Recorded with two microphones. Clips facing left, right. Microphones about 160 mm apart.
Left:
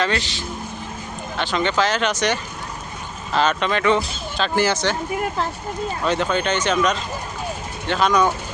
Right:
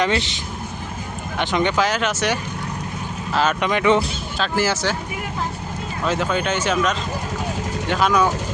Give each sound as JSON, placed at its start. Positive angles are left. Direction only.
{"t": 0.0, "sound": "speech", "side_deg": -20}
{"t": 4.4, "sound": "speech", "side_deg": 0}
{"t": 6.1, "sound": "speech", "side_deg": -5}